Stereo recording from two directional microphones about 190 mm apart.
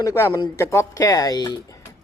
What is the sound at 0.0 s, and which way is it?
Speech, 15° left (ahead or behind).